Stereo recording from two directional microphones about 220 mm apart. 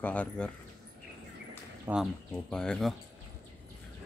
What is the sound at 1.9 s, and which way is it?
Speech, 10° right (ahead or behind).